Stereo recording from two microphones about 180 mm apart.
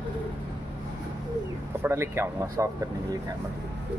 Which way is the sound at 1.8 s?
15° right (ahead or behind).